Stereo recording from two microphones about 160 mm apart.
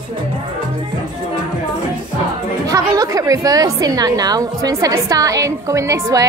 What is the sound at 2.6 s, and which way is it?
A woman's voice, 20° right (ahead or behind).